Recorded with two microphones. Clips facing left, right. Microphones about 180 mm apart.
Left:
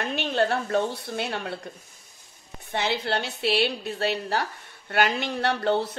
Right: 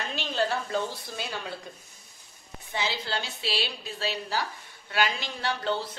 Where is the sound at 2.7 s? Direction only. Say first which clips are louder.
Left 5 dB; 60° left (ahead or behind).